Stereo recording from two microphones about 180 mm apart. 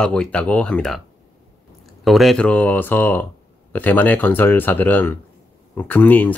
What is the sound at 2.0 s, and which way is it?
Speech, centre (ahead or behind).